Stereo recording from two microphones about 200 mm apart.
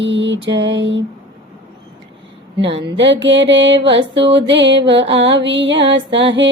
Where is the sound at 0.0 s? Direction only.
65° right (ahead or behind).